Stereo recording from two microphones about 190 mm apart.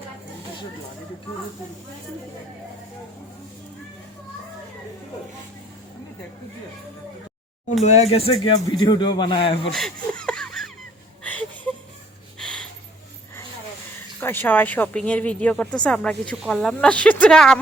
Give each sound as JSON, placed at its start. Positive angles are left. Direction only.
{"t": 7.9, "sound": "speech", "side_deg": 35}
{"t": 9.7, "sound": "a sound", "side_deg": 5}
{"t": 14.2, "sound": "speech", "side_deg": 10}